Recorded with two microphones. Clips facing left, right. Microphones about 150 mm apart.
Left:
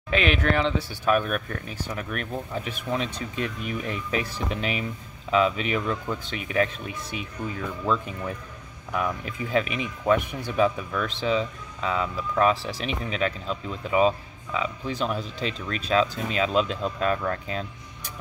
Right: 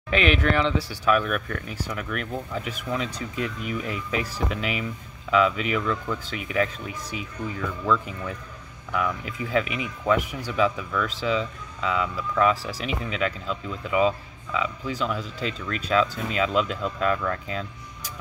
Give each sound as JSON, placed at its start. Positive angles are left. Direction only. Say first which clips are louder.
{"t": 0.1, "sound": "speech", "louder": "right 1 dB", "side_deg": 40}
{"t": 10.6, "sound": "speech", "louder": "even", "side_deg": 40}